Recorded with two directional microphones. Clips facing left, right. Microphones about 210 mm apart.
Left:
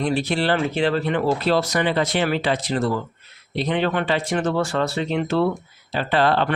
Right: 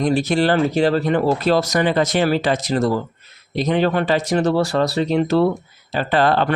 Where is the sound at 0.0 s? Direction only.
45° right (ahead or behind).